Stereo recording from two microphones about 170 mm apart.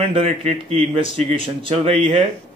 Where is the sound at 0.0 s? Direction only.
35° right (ahead or behind).